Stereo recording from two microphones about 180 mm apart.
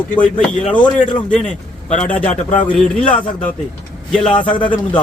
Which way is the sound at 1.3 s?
5° left (ahead or behind).